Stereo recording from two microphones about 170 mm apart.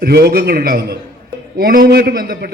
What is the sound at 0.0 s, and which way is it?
A man's voice, 65° right (ahead or behind).